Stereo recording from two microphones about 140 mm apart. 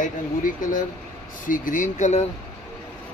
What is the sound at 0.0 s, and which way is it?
Speech, 70° left (ahead or behind).